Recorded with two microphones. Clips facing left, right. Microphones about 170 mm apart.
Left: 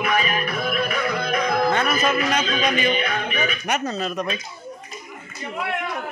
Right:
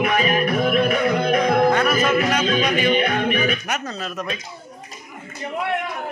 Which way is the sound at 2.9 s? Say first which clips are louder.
Right 5 dB; 50° right (ahead or behind).